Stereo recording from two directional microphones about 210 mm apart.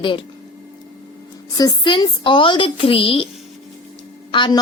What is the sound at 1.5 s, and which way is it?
A woman's voice, 20° left (ahead or behind).